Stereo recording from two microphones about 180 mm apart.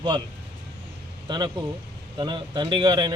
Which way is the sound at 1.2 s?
25° right (ahead or behind).